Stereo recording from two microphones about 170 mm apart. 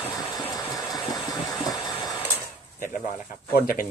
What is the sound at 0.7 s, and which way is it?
Engine, 20° left (ahead or behind).